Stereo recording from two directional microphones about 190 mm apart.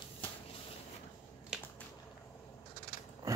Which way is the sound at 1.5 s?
5° right (ahead or behind).